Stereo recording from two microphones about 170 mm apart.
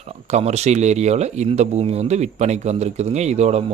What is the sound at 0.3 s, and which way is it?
Speech, 40° right (ahead or behind).